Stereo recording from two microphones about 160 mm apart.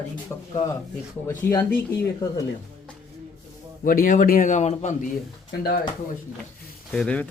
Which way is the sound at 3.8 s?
60° left (ahead or behind).